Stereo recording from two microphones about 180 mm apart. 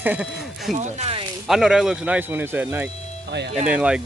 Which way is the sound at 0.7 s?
40° right (ahead or behind).